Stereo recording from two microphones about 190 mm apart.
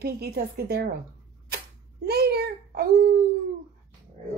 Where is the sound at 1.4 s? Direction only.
55° right (ahead or behind).